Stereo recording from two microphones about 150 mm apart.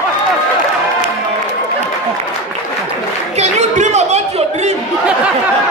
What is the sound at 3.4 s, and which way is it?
Chatter, 50° right (ahead or behind).